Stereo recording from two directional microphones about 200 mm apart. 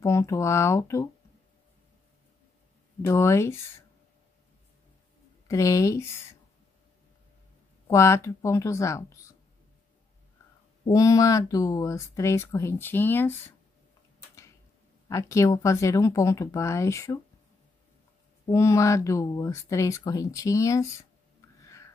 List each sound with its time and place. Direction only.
0.0 s speech: 15° left (ahead or behind)
3.1 s speech: 15° left (ahead or behind)
5.5 s speech: 15° left (ahead or behind)
7.9 s speech: 15° left (ahead or behind)
10.9 s speech: 15° left (ahead or behind)
15.0 s speech: 15° left (ahead or behind)
18.4 s speech: 15° left (ahead or behind)